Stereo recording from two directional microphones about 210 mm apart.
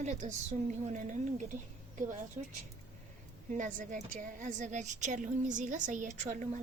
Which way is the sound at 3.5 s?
35° right (ahead or behind).